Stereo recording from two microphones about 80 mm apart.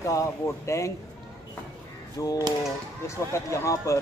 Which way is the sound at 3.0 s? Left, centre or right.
Left.